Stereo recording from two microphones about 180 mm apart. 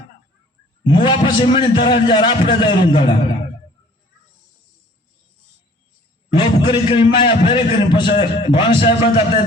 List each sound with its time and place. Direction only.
0.9 s a man's voice: 25° left (ahead or behind)
6.3 s a man's voice: 25° left (ahead or behind)